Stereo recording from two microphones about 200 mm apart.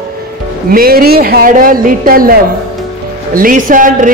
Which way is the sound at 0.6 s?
50° right (ahead or behind).